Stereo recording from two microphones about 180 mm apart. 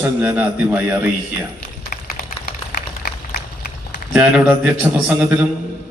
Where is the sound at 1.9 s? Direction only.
50° left (ahead or behind).